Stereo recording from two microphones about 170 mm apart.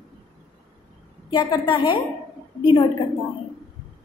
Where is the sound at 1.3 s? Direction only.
25° left (ahead or behind).